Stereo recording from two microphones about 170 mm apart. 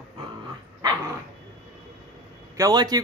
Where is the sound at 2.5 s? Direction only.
20° right (ahead or behind).